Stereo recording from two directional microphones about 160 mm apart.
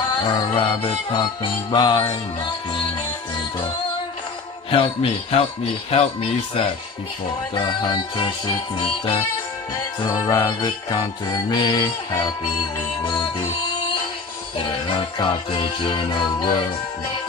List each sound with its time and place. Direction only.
0.6 s music: 30° left (ahead or behind)
4.6 s music: 35° left (ahead or behind)
7.5 s music: 30° left (ahead or behind)
10.0 s music: 25° left (ahead or behind)
14.6 s music: 30° left (ahead or behind)